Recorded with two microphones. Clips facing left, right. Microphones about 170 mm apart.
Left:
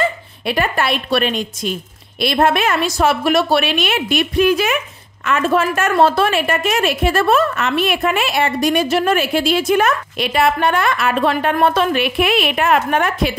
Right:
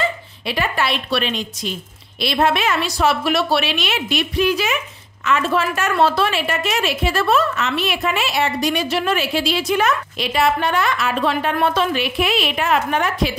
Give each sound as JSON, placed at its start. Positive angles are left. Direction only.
{"t": 0.0, "sound": "a woman's voice", "side_deg": 50}